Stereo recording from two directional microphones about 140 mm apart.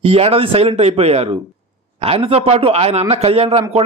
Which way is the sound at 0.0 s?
45° right (ahead or behind).